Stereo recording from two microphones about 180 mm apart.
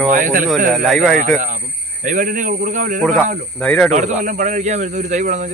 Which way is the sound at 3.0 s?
5° left (ahead or behind).